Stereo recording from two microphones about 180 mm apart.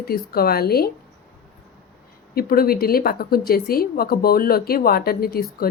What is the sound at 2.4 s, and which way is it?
A woman's voice, 55° left (ahead or behind).